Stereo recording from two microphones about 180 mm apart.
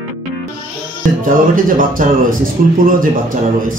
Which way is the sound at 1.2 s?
50° right (ahead or behind).